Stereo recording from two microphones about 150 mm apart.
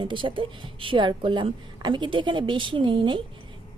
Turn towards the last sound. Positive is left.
turn(degrees=-30)  # may be behind; listen again after turning